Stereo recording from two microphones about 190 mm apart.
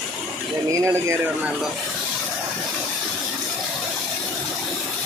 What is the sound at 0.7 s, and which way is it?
Speech, 15° right (ahead or behind).